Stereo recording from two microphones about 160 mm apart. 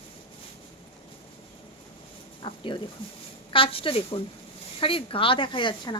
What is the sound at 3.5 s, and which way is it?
Speech, 35° left (ahead or behind).